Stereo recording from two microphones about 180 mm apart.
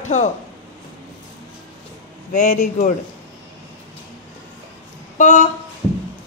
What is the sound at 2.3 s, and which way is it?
Speech, 40° left (ahead or behind).